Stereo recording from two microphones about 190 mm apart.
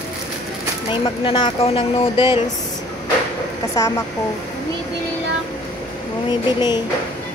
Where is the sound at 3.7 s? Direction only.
15° left (ahead or behind).